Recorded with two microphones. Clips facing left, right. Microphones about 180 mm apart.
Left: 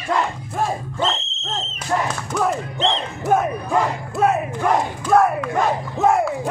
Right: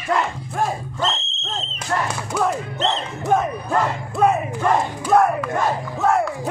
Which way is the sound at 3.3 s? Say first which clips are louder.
Left 1 dB; 5° left (ahead or behind).